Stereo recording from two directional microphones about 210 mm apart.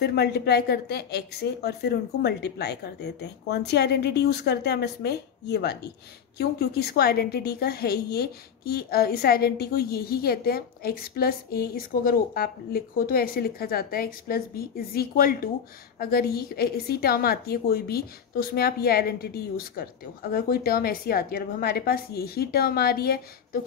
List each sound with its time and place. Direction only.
0.0 s a woman's voice: 50° left (ahead or behind)